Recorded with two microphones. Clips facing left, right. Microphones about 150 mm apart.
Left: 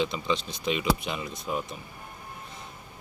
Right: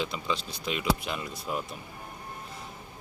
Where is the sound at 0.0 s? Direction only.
5° right (ahead or behind).